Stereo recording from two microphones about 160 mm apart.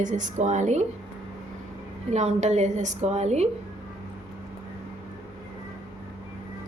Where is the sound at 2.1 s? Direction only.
45° right (ahead or behind).